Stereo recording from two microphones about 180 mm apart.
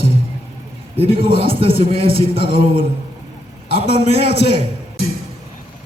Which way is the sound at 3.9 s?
70° left (ahead or behind).